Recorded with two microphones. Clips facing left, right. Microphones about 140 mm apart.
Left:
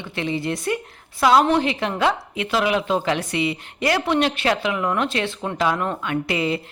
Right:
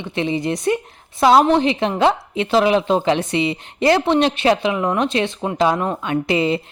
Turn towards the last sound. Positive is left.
turn(degrees=-25)  # may be behind; listen again after turning